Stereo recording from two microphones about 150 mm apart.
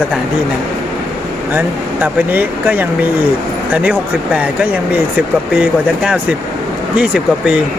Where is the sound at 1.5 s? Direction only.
10° right (ahead or behind).